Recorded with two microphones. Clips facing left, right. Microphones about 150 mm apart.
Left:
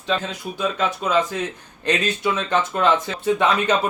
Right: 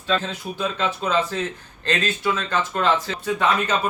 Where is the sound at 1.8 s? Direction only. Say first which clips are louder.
Left 2 dB; 20° left (ahead or behind).